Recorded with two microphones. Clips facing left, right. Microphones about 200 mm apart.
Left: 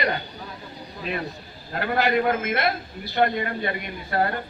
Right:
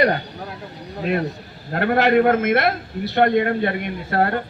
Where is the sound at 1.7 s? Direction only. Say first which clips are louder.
Right 6 dB; 65° right (ahead or behind).